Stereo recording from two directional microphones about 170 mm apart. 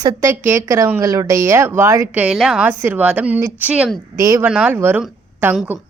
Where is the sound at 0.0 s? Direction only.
20° right (ahead or behind).